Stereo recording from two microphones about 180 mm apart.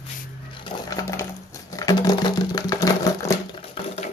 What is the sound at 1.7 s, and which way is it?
Sewing machine, 20° left (ahead or behind).